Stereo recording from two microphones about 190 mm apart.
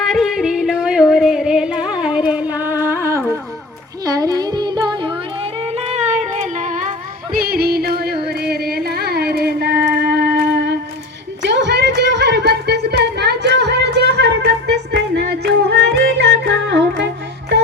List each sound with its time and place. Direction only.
0.1 s music: centre (ahead or behind); by 6.9 s 40° right (ahead or behind)
7.3 s music: 55° right (ahead or behind)
8.3 s a sound: 55° right (ahead or behind)